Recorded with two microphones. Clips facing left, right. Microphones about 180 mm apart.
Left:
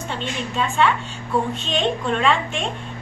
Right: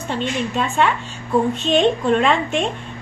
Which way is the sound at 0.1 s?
45° right (ahead or behind).